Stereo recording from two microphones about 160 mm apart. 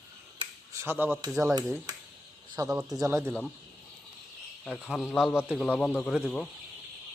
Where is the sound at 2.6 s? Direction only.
5° right (ahead or behind).